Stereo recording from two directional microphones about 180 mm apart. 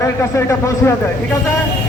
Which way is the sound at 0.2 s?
15° left (ahead or behind).